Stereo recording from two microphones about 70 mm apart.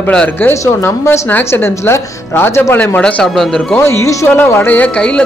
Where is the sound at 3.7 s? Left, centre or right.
Left.